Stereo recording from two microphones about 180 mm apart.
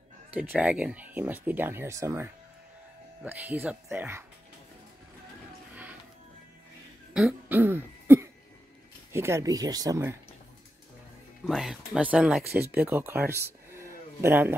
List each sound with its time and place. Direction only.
0.3 s speech: 10° right (ahead or behind)
7.2 s throat clearing: 5° right (ahead or behind)
9.1 s speech: 15° right (ahead or behind)
11.4 s speech: centre (ahead or behind)